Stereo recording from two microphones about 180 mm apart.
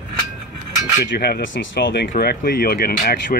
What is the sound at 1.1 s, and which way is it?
Speech, 65° left (ahead or behind).